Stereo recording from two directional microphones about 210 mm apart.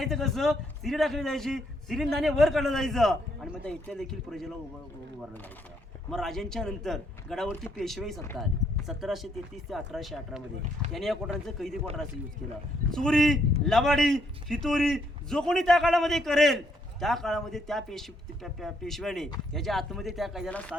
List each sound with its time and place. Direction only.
0.0 s a man's voice: centre (ahead or behind)
6.1 s a man's voice: centre (ahead or behind)
12.9 s a man's voice: 5° left (ahead or behind)